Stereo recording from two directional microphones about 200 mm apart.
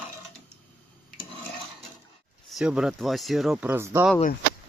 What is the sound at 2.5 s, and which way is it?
Speech, 5° right (ahead or behind).